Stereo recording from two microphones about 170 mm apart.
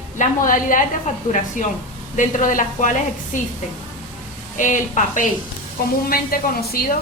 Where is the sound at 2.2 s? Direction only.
50° left (ahead or behind).